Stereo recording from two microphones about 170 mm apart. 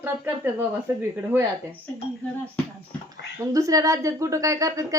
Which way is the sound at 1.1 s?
15° right (ahead or behind).